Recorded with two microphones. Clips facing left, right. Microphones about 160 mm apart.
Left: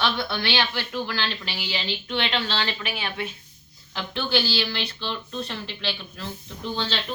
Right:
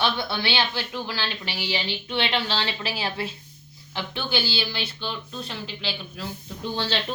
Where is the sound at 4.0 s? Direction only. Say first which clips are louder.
Left 2 dB; 15° right (ahead or behind).